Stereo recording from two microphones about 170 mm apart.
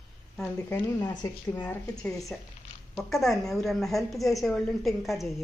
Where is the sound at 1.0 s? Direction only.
25° left (ahead or behind).